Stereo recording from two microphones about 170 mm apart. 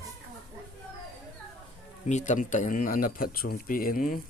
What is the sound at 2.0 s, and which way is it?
Speech, 45° left (ahead or behind).